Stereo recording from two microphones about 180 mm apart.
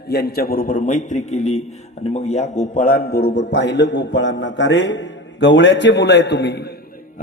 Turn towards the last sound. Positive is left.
turn(degrees=65)  # may be behind; listen again after turning